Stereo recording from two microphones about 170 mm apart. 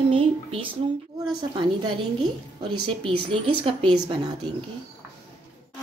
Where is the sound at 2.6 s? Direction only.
30° right (ahead or behind).